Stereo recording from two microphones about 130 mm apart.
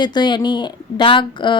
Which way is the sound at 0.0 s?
35° left (ahead or behind).